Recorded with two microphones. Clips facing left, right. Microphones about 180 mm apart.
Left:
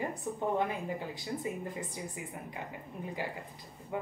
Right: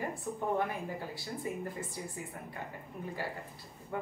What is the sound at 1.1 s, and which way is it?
Speech, 20° left (ahead or behind).